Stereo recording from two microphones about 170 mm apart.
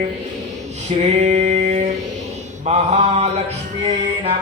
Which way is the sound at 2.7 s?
40° right (ahead or behind).